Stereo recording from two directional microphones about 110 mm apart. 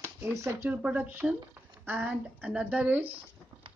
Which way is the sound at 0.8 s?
10° right (ahead or behind).